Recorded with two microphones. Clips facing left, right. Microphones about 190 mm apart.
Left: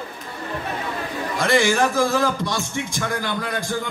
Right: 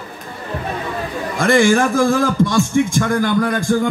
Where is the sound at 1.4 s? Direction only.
50° right (ahead or behind).